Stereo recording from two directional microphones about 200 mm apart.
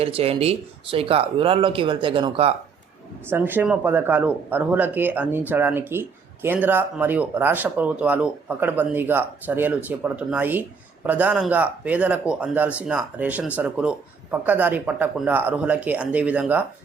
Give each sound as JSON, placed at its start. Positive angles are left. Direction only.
{"t": 0.0, "sound": "speech", "side_deg": -30}
{"t": 3.2, "sound": "speech", "side_deg": -10}